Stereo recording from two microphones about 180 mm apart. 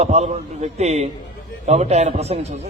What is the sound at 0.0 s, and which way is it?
A man's voice, 35° right (ahead or behind).